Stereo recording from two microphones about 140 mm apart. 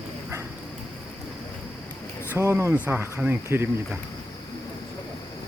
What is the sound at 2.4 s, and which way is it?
Speech, 20° right (ahead or behind).